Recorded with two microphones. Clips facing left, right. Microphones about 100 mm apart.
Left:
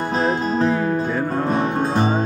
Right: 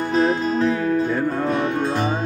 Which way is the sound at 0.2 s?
30° left (ahead or behind).